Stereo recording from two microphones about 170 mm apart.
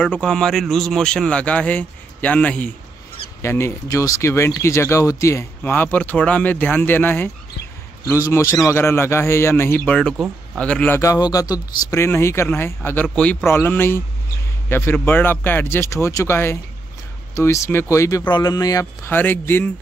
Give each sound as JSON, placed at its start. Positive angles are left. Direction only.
{"t": 0.0, "sound": "speech", "side_deg": 5}
{"t": 10.1, "sound": "speech", "side_deg": -5}
{"t": 10.6, "sound": "speech", "side_deg": 5}
{"t": 11.0, "sound": "speech", "side_deg": 20}